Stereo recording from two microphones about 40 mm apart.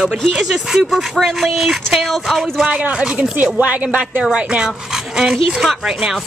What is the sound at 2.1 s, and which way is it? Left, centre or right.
Speech, centre.